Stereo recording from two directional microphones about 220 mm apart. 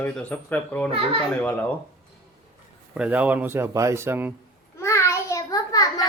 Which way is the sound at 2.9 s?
5° right (ahead or behind).